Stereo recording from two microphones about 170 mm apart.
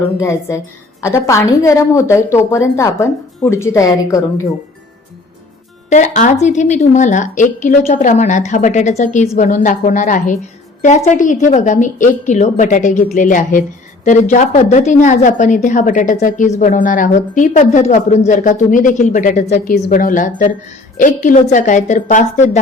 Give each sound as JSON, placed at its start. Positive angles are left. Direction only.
{"t": 0.2, "sound": "a woman's voice", "side_deg": 15}
{"t": 5.9, "sound": "a woman's voice", "side_deg": 45}